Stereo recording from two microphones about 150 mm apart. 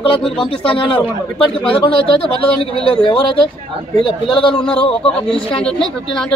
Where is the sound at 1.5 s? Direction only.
35° left (ahead or behind).